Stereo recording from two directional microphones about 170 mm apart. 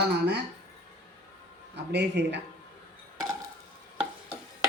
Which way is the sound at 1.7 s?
85° right.